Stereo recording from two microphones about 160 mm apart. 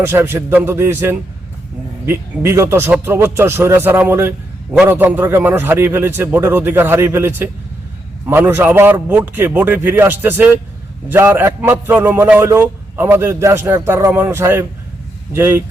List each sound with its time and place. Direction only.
0.0 s a man's voice: 15° right (ahead or behind)